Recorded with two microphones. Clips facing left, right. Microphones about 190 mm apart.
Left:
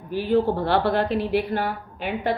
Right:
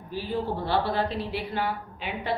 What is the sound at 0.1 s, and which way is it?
A woman's voice, 65° left (ahead or behind).